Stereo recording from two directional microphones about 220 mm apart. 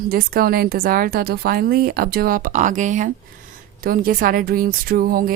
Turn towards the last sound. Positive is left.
turn(degrees=-40)  # may be behind; listen again after turning